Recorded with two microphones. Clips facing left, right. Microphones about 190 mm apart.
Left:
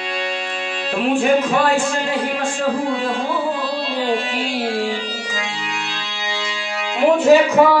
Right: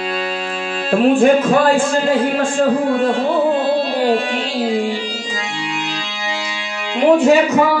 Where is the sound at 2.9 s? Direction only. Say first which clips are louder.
Right 5 dB; 60° right (ahead or behind).